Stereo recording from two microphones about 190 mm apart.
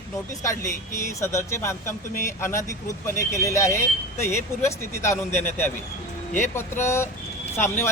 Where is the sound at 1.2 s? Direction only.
15° left (ahead or behind).